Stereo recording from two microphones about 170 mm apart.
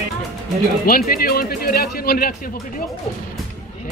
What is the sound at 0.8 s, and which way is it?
Speech, 60° left (ahead or behind).